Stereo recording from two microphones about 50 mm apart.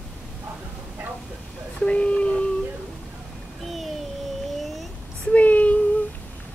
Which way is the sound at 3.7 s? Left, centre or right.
Centre.